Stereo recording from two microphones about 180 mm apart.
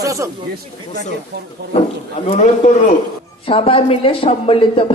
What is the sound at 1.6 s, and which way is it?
Speech, 65° right (ahead or behind).